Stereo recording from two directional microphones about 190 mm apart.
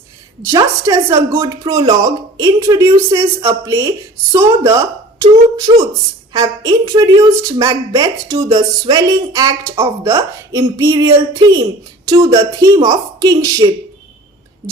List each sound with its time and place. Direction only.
0.4 s a woman's voice: 15° right (ahead or behind)